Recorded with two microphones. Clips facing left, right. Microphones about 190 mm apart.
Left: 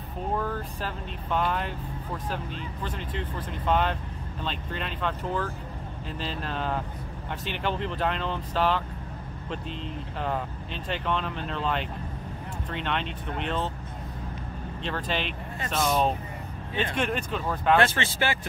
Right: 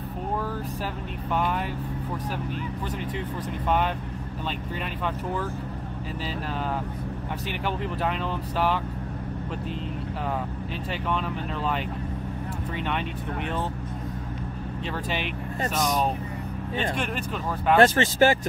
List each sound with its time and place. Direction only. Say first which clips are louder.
1.3 s speech: right 1 dB; 10° right (ahead or behind)
3.2 s speech: right 3 dB; 10° right (ahead or behind)
10.9 s speech: even; 10° right (ahead or behind)
14.9 s speech: left 1 dB; 10° right (ahead or behind)
16.9 s speech: left 1 dB; 5° right (ahead or behind)
17.7 s speech: right 6 dB; 40° right (ahead or behind)